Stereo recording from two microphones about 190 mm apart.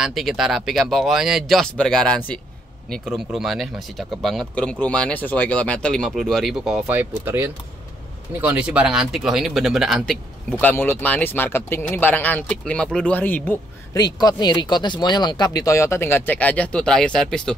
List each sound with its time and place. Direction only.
0.0 s speech: centre (ahead or behind)
10.6 s speech: 10° left (ahead or behind)
13.9 s speech: 20° left (ahead or behind); by 17.6 s 5° left (ahead or behind)